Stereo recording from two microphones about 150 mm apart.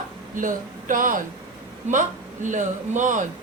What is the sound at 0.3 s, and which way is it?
A woman's voice, 60° right (ahead or behind).